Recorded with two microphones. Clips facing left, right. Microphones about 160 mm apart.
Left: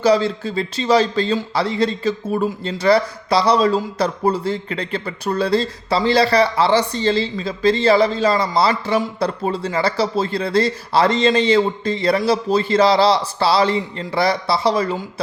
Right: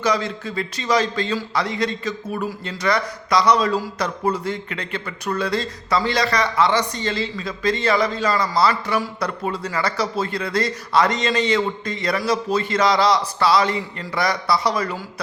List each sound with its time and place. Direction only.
0.0 s speech: 30° left (ahead or behind)